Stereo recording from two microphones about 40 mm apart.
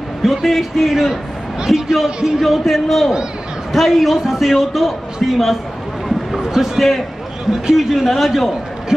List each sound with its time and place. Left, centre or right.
0.2 s a man's voice: centre
2.0 s a man's voice: centre
2.4 s a man's voice: centre
6.0 s a sound: centre
6.5 s a man's voice: centre